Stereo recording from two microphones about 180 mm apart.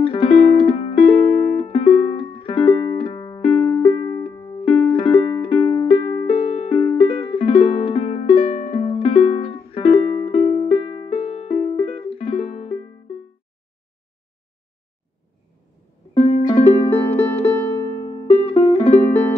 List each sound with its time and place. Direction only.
0.0 s music: 30° left (ahead or behind)
16.2 s music: 35° left (ahead or behind)